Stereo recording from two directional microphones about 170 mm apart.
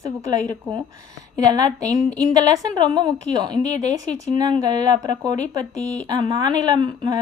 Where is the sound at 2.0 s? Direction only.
5° left (ahead or behind).